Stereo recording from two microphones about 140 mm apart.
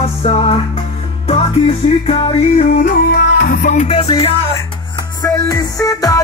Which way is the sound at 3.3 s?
80° left.